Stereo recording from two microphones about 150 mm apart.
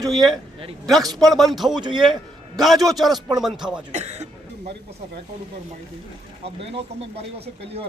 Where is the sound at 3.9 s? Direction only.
50° right (ahead or behind).